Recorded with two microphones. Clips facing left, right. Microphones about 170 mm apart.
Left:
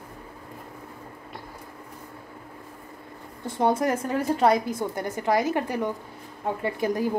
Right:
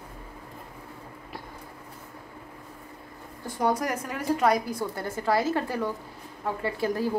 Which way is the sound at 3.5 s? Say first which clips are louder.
Left 3 dB; 25° left (ahead or behind).